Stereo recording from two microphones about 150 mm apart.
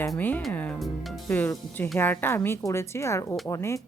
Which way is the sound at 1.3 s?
10° left (ahead or behind).